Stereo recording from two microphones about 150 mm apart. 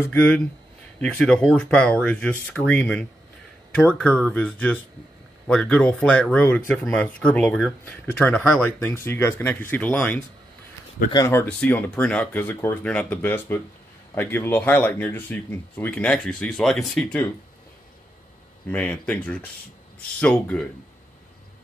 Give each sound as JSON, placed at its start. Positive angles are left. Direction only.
{"t": 0.0, "sound": "speech", "side_deg": 10}
{"t": 11.0, "sound": "speech", "side_deg": 75}
{"t": 11.4, "sound": "speech", "side_deg": 10}
{"t": 18.7, "sound": "speech", "side_deg": 10}